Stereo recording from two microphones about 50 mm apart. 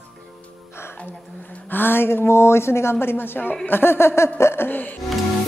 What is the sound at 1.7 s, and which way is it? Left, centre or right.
A woman's voice, left.